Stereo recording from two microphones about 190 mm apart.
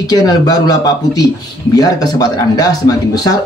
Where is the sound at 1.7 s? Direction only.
20° left (ahead or behind).